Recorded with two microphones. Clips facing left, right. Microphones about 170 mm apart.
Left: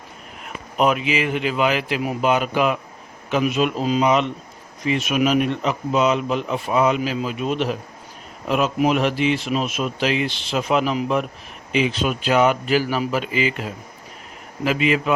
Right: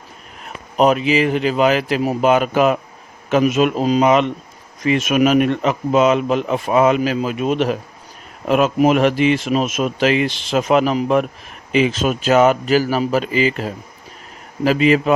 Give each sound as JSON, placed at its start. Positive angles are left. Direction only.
{"t": 0.4, "sound": "speech", "side_deg": -35}
{"t": 2.2, "sound": "a man's voice", "side_deg": -45}